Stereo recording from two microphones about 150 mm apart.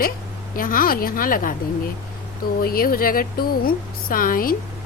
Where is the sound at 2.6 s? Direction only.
80° left.